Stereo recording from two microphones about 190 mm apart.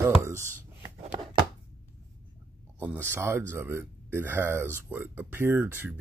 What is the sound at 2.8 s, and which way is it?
Speech, 10° right (ahead or behind).